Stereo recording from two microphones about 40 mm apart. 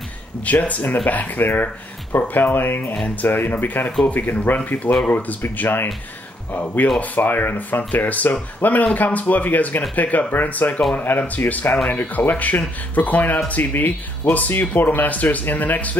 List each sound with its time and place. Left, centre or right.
0.5 s speech: left
5.4 s speech: left
6.5 s speech: left
7.0 s speech: left
14.6 s speech: left